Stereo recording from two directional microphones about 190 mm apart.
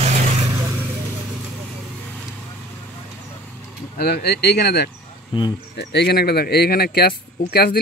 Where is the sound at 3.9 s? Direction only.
55° left (ahead or behind).